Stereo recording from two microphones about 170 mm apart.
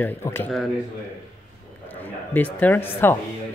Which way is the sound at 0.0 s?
10° left (ahead or behind).